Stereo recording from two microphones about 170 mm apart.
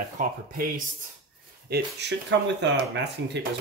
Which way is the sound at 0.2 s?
55° right (ahead or behind).